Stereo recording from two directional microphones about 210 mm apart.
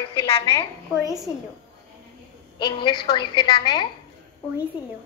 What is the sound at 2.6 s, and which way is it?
A woman's voice, 20° left (ahead or behind).